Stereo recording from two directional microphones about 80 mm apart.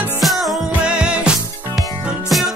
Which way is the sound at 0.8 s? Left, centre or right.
Centre.